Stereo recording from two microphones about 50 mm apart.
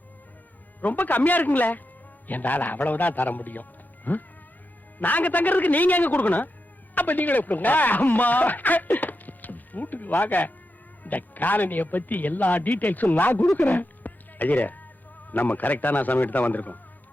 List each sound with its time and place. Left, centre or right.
0.8 s a man's voice: left
13.6 s music: left
15.3 s a man's voice: left